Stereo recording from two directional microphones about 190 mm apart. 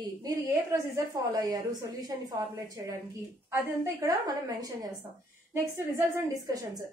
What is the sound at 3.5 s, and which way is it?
A woman's voice, 15° right (ahead or behind).